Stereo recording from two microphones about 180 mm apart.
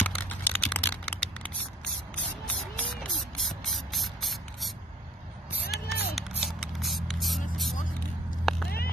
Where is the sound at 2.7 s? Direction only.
Centre (ahead or behind).